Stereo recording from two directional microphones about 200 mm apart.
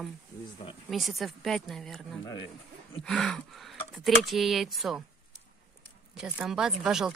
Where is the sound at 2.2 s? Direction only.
20° left (ahead or behind).